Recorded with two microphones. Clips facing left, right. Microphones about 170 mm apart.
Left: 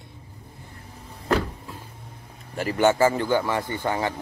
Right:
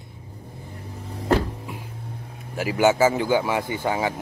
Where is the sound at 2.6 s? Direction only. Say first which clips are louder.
Right 1 dB; 5° right (ahead or behind).